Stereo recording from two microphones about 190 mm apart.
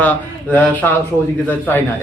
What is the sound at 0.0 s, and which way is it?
A man's voice, 10° left (ahead or behind).